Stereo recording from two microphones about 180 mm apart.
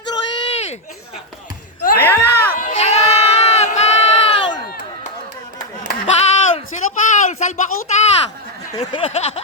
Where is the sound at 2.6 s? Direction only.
40° left (ahead or behind).